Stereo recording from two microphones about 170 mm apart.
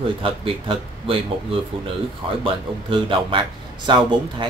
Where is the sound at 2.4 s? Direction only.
30° right (ahead or behind).